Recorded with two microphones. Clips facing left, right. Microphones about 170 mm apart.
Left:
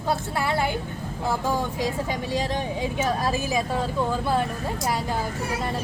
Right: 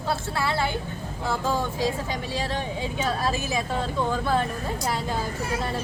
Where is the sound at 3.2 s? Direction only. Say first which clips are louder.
Left 2 dB; 15° left (ahead or behind).